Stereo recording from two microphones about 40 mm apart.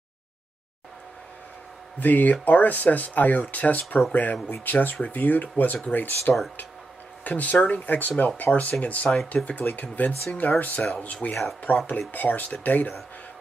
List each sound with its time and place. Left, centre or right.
2.0 s speech: left
8.5 s speech: left
8.8 s speech: left